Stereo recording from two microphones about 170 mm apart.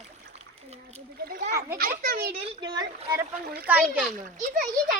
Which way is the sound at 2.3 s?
30° right (ahead or behind).